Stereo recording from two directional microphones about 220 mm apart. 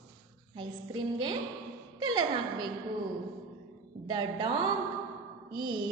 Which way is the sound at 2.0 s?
20° right (ahead or behind).